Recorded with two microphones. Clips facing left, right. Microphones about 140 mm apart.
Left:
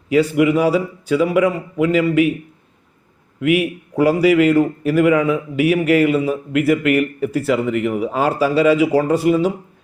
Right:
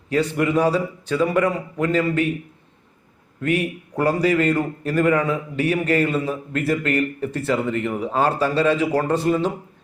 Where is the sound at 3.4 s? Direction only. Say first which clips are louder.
Left 5 dB; 10° left (ahead or behind).